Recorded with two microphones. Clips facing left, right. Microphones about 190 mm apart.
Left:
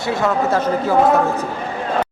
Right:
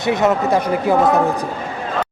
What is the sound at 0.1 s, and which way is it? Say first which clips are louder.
Speech: right 2 dB; 20° right (ahead or behind).